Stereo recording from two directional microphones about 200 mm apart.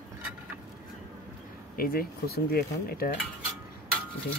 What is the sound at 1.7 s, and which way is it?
Speech, 50° left (ahead or behind).